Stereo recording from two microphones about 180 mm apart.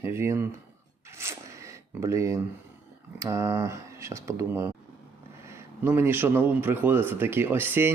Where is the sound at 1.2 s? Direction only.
15° right (ahead or behind).